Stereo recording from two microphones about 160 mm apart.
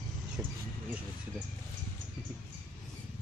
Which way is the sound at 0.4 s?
10° right (ahead or behind).